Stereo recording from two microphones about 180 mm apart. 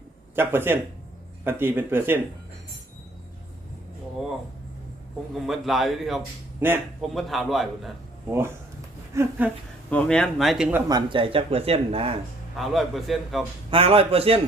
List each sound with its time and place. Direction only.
0.3 s speech: 10° right (ahead or behind)
5.5 s speech: centre (ahead or behind)
7.1 s speech: centre (ahead or behind)
8.3 s speech: 15° right (ahead or behind)
9.9 s speech: 5° left (ahead or behind); by 10.9 s 10° right (ahead or behind)
10.9 s speech: 30° right (ahead or behind)
12.5 s speech: centre (ahead or behind)
13.7 s speech: 30° right (ahead or behind)